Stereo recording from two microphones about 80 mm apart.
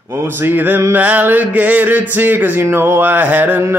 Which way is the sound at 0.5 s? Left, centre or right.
Right.